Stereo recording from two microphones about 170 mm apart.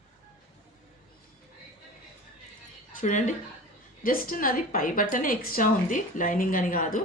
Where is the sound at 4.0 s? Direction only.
60° left (ahead or behind).